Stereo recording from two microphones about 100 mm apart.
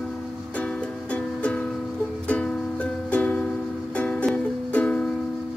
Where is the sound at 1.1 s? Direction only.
15° left (ahead or behind).